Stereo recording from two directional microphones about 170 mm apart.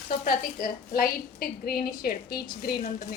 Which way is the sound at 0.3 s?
60° left (ahead or behind).